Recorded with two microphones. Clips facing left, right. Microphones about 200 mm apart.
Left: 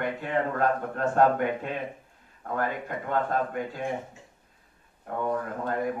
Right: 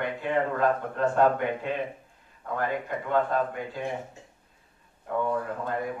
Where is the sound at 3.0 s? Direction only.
45° left (ahead or behind).